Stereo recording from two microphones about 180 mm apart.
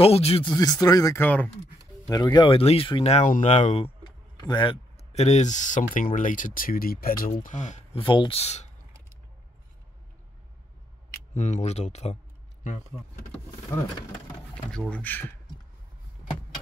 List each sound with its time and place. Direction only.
0.0 s speech: 35° left (ahead or behind); by 1.5 s 10° left (ahead or behind)
2.0 s speech: 20° left (ahead or behind)
4.4 s speech: 25° left (ahead or behind); by 7.3 s 55° left (ahead or behind)
7.4 s speech: 40° left (ahead or behind)
8.0 s speech: 30° left (ahead or behind)
11.3 s speech: 40° left (ahead or behind)
13.7 s speech: 20° left (ahead or behind)
14.7 s speech: 5° left (ahead or behind)